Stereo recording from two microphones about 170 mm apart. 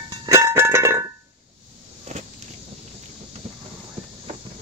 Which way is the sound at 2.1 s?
40° right (ahead or behind).